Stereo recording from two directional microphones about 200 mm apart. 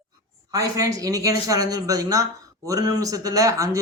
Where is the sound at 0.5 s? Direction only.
15° right (ahead or behind).